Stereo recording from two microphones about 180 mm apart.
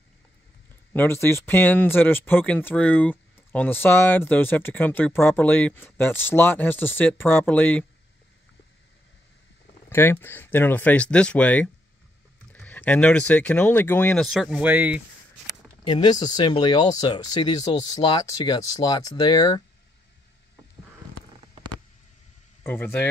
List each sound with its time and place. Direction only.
0.9 s speech: 15° left (ahead or behind)
9.8 s speech: 10° left (ahead or behind); by 15.0 s 10° right (ahead or behind)
15.9 s speech: 25° left (ahead or behind)
22.6 s speech: 10° left (ahead or behind)